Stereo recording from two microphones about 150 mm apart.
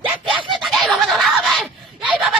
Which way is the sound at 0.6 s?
Centre (ahead or behind).